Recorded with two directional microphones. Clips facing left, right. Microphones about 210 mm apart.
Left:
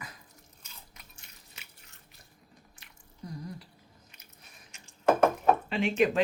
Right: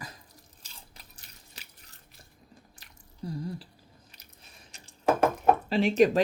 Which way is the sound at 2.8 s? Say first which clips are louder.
Right 6 dB; 30° right (ahead or behind).